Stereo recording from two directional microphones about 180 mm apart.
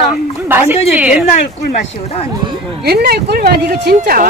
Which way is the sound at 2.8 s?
60° right (ahead or behind).